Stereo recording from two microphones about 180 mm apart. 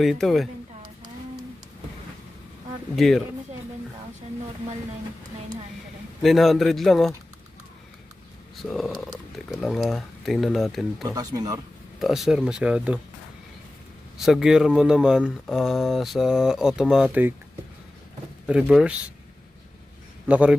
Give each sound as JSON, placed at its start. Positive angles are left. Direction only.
{"t": 0.0, "sound": "speech", "side_deg": 0}
{"t": 3.0, "sound": "speech", "side_deg": 0}
{"t": 6.2, "sound": "speech", "side_deg": 0}
{"t": 8.6, "sound": "speech", "side_deg": 0}
{"t": 11.1, "sound": "speech", "side_deg": -20}
{"t": 12.0, "sound": "speech", "side_deg": 0}
{"t": 14.2, "sound": "speech", "side_deg": -5}
{"t": 18.5, "sound": "speech", "side_deg": -5}
{"t": 20.2, "sound": "a man's voice", "side_deg": -5}